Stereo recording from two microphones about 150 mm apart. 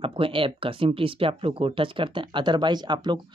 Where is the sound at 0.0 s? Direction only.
35° right (ahead or behind).